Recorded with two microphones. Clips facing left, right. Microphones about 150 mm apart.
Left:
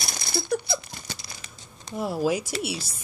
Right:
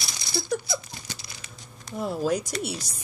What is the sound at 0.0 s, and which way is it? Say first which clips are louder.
Rattle: left 2 dB; 50° left (ahead or behind).